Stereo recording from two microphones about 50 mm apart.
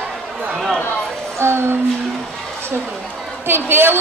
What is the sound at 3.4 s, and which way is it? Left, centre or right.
Speech, right.